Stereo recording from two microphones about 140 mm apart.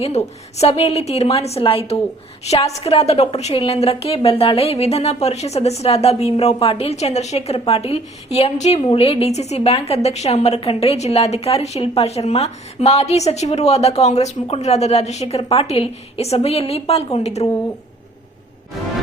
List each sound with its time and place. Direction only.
0.2 s a woman's voice: 50° left (ahead or behind)
8.8 s a woman's voice: 40° left (ahead or behind)